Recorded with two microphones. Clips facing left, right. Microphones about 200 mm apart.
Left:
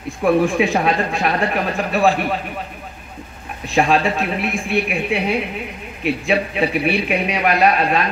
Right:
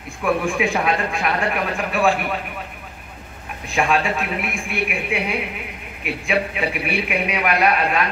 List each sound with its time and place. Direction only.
0.2 s speech: 35° left (ahead or behind)
3.7 s speech: 35° left (ahead or behind)